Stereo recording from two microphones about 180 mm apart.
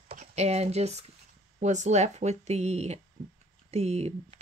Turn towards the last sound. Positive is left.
turn(degrees=-35)  # may be behind; listen again after turning